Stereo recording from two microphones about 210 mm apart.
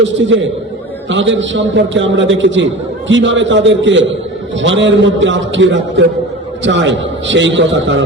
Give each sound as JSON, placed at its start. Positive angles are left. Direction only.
{"t": 0.0, "sound": "a man's voice", "side_deg": -60}